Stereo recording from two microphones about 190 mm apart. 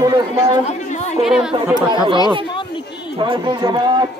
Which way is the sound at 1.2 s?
5° right (ahead or behind).